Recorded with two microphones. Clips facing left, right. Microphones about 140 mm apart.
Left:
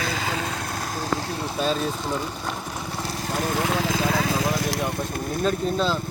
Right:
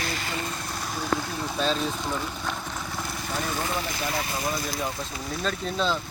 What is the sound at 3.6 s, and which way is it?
Speech, 85° left.